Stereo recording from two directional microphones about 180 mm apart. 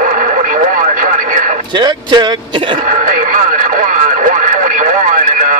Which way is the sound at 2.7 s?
45° right (ahead or behind).